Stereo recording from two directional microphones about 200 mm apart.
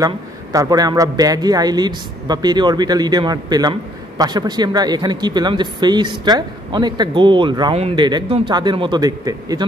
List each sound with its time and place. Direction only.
0.0 s speech: 15° right (ahead or behind)